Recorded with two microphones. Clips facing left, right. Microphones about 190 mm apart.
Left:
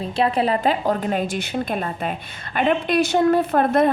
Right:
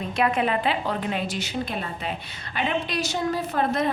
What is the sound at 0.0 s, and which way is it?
A woman's voice, 30° left (ahead or behind).